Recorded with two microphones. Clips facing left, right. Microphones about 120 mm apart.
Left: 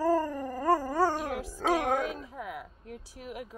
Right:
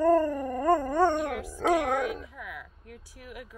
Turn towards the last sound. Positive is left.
turn(degrees=25)  # may be behind; listen again after turning